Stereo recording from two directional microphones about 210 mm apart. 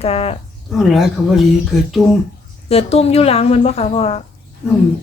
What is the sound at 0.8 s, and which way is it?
Speech, centre (ahead or behind).